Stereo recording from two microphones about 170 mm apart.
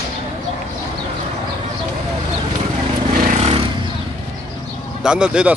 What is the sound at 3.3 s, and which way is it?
Vehicle, 35° right (ahead or behind).